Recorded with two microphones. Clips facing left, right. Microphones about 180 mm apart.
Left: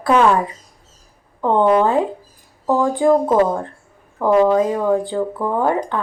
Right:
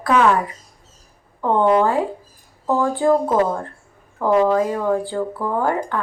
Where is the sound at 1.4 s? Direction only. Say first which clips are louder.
Left 2 dB; 20° left (ahead or behind).